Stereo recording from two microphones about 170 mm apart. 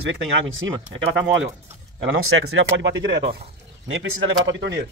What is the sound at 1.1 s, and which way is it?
Speech, 90° right.